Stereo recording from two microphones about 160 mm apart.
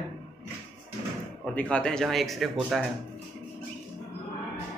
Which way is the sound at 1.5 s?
5° left (ahead or behind).